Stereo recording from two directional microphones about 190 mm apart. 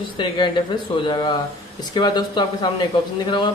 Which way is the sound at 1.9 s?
25° left (ahead or behind).